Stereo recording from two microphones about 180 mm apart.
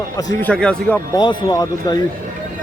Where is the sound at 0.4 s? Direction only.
5° left (ahead or behind).